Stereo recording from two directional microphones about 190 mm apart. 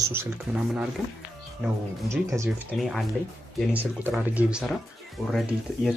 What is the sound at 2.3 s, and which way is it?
Speech, 10° right (ahead or behind).